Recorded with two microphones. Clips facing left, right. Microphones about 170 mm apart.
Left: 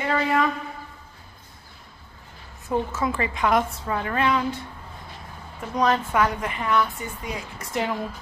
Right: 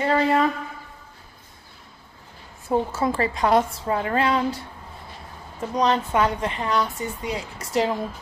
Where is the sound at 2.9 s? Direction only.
35° right (ahead or behind).